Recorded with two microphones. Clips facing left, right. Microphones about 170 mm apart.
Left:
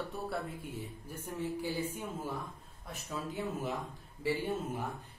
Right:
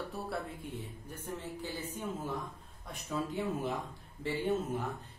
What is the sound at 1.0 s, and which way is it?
A woman's voice, 10° left (ahead or behind).